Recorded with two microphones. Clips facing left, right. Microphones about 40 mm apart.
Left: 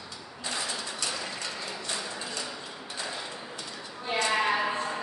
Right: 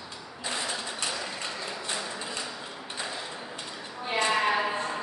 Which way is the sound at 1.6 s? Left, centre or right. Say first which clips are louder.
Right 1 dB; centre.